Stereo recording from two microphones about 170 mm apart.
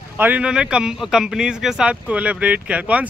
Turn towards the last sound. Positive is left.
turn(degrees=-10)  # may be behind; listen again after turning